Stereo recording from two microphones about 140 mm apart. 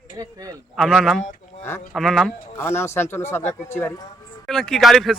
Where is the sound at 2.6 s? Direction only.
15° left (ahead or behind).